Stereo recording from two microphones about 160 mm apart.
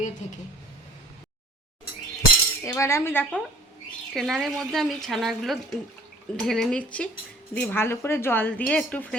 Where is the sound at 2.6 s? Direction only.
15° left (ahead or behind).